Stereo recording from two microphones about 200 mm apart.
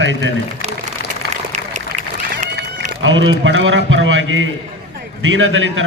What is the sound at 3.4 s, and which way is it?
A man's voice, 70° right (ahead or behind).